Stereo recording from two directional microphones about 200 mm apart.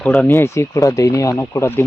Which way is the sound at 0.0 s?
10° left (ahead or behind).